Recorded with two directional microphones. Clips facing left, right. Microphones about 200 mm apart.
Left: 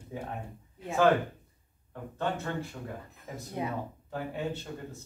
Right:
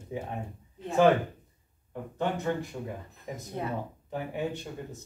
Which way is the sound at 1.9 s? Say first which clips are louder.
Right 2 dB; 15° right (ahead or behind).